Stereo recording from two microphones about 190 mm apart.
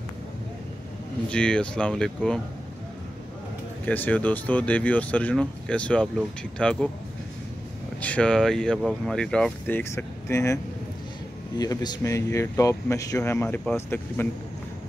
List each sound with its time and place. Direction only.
1.3 s speech: 5° left (ahead or behind)
3.8 s speech: 10° left (ahead or behind)
8.0 s speech: 5° left (ahead or behind)